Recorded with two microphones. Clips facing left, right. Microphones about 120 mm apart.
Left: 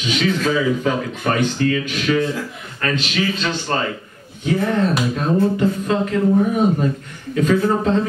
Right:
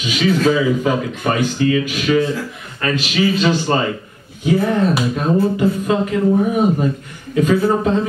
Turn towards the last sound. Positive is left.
turn(degrees=-5)  # may be behind; listen again after turning